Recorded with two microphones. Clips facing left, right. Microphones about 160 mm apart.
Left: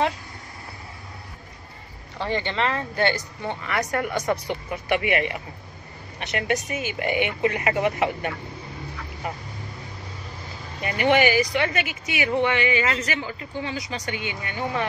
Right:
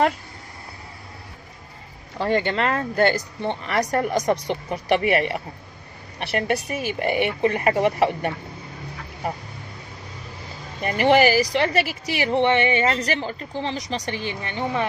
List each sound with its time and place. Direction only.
2.1 s speech: 50° right (ahead or behind)
10.8 s speech: 40° right (ahead or behind); by 14.9 s 20° right (ahead or behind)